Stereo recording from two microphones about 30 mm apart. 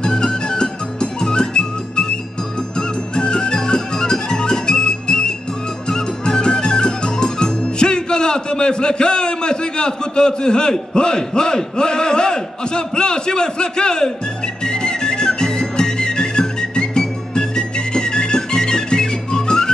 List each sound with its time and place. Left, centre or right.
0.0 s music: left
3.2 s music: left
7.6 s a man's voice: left
14.6 s music: left